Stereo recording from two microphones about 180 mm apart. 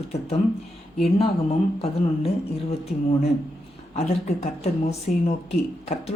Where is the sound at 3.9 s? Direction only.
35° left (ahead or behind).